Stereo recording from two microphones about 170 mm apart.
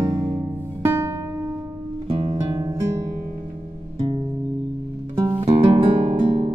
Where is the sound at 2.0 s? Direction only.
30° right (ahead or behind).